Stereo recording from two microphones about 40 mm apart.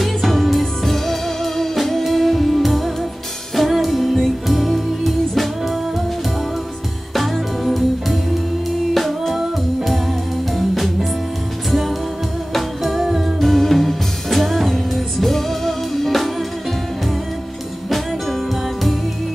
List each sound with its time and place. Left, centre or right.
0.0 s music: centre
7.2 s music: centre
9.3 s music: centre
10.5 s music: centre
12.5 s music: centre
17.8 s music: centre